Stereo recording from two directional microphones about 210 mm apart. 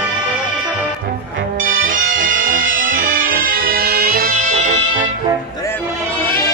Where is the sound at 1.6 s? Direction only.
40° right (ahead or behind).